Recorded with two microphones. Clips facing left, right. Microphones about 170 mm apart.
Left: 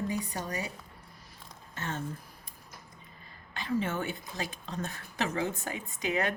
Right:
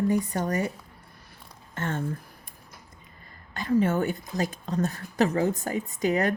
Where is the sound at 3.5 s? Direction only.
45° right (ahead or behind).